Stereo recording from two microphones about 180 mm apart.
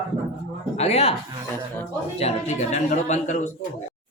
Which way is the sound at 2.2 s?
35° left (ahead or behind).